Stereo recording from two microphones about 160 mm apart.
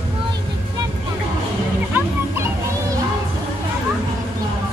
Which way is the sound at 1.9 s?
15° right (ahead or behind).